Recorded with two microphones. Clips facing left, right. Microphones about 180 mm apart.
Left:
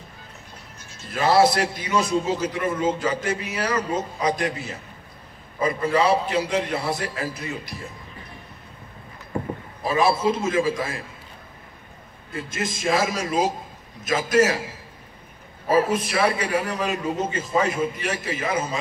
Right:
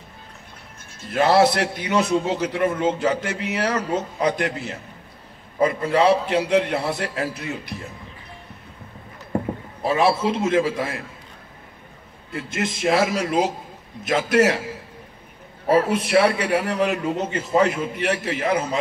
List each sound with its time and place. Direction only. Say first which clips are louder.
1.1 s a man's voice: right 1 dB; 60° right (ahead or behind)
9.8 s a man's voice: right 2 dB; 65° right (ahead or behind)
12.4 s a man's voice: right 3 dB; 65° right (ahead or behind)
15.7 s a man's voice: right 3 dB; 65° right (ahead or behind)